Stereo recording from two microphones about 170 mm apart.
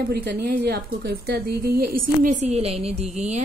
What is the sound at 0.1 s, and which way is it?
A woman's voice, 70° right (ahead or behind).